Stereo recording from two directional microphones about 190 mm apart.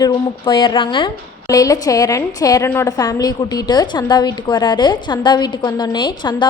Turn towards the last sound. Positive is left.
turn(degrees=25)  # may be behind; listen again after turning